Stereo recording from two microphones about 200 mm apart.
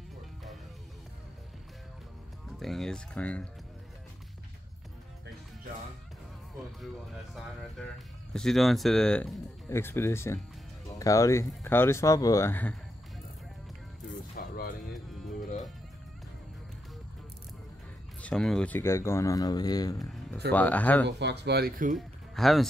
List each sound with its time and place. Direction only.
2.6 s speech: centre (ahead or behind)
8.3 s speech: centre (ahead or behind)
14.4 s music: 45° left (ahead or behind)
18.2 s speech: 5° left (ahead or behind); by 20.0 s 20° left (ahead or behind)
20.0 s music: centre (ahead or behind)
20.5 s speech: 5° left (ahead or behind)
21.2 s speech: 60° right (ahead or behind)
21.9 s speech: centre (ahead or behind)